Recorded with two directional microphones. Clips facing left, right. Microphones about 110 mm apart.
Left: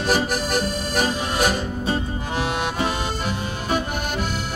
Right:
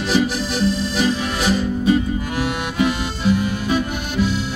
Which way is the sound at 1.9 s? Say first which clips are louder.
Right 5 dB; 35° left (ahead or behind).